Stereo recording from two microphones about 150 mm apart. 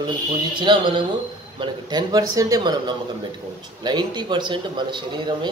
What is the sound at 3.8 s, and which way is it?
A man's voice, 30° right (ahead or behind).